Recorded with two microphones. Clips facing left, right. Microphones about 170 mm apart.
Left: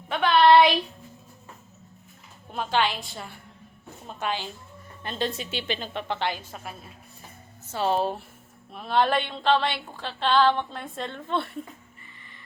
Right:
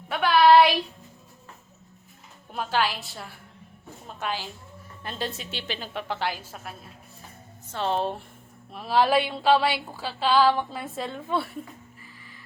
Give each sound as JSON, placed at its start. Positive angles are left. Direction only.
{"t": 0.1, "sound": "a sound", "side_deg": -5}
{"t": 2.5, "sound": "speech", "side_deg": -5}
{"t": 7.7, "sound": "speech", "side_deg": 5}
{"t": 11.9, "sound": "music", "side_deg": -5}